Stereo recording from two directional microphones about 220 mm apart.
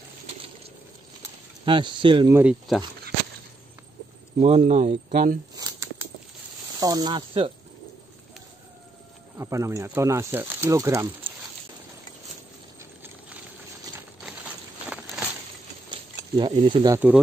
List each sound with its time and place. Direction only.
1.7 s speech: 20° right (ahead or behind)
2.3 s speech: 5° right (ahead or behind)
4.4 s speech: 30° right (ahead or behind)
5.6 s a sound: 15° right (ahead or behind)
6.8 s speech: 20° right (ahead or behind)
9.4 s speech: 15° right (ahead or behind)
14.9 s a sound: centre (ahead or behind)
15.9 s a sound: 20° right (ahead or behind)
16.6 s speech: 20° right (ahead or behind)